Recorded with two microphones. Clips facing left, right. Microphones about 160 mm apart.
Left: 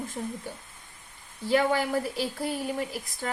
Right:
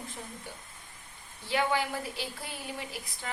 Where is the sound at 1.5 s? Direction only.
45° left (ahead or behind).